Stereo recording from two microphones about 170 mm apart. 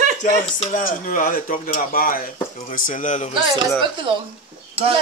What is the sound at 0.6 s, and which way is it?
A man's voice, 50° left (ahead or behind).